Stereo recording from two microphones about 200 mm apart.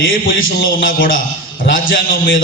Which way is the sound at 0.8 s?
45° left (ahead or behind).